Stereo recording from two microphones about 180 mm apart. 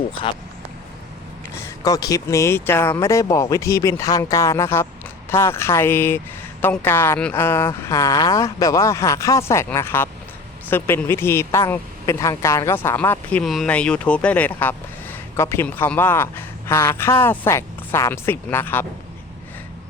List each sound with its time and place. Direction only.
0.1 s speech: 30° left (ahead or behind)
1.8 s speech: 20° left (ahead or behind)